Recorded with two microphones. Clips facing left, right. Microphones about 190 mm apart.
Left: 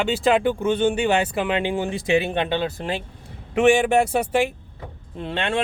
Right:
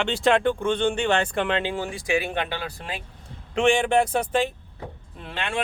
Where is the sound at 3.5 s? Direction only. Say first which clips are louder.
Left 3 dB; 5° left (ahead or behind).